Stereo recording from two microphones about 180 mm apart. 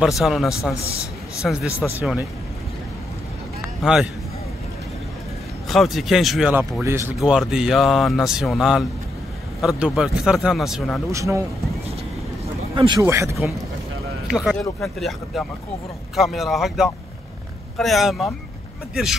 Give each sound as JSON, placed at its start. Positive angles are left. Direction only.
{"t": 0.0, "sound": "speech", "side_deg": 0}
{"t": 3.8, "sound": "speech", "side_deg": -5}
{"t": 5.7, "sound": "speech", "side_deg": 0}
{"t": 7.2, "sound": "speech", "side_deg": -5}
{"t": 11.1, "sound": "speech", "side_deg": -15}
{"t": 12.7, "sound": "speech", "side_deg": -25}
{"t": 13.0, "sound": "speech", "side_deg": -15}
{"t": 14.3, "sound": "speech", "side_deg": 0}